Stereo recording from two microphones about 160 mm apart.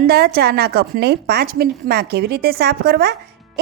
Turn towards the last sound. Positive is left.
turn(degrees=-75)  # may be behind; listen again after turning